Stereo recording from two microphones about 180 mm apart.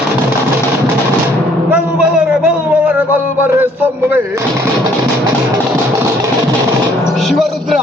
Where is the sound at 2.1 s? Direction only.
5° right (ahead or behind).